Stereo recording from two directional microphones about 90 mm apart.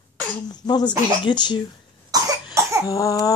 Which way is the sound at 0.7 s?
55° left (ahead or behind).